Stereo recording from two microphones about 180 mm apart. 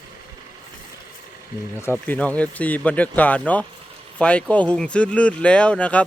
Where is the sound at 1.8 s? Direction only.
10° left (ahead or behind).